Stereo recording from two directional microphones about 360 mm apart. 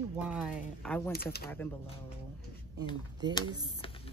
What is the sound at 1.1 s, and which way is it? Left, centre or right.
Speech, left.